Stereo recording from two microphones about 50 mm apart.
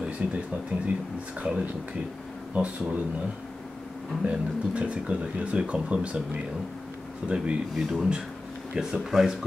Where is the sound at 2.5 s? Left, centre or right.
Right.